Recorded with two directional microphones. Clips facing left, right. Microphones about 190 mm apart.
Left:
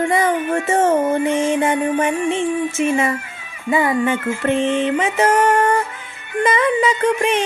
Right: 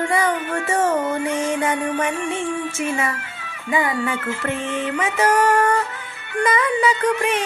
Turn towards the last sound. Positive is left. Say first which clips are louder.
# left 3 dB
turn(degrees=25)  # may be behind; listen again after turning